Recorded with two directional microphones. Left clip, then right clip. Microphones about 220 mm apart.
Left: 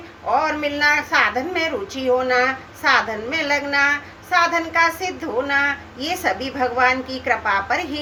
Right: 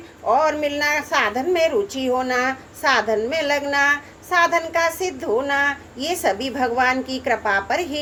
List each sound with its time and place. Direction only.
0.3 s a woman's voice: 45° right (ahead or behind)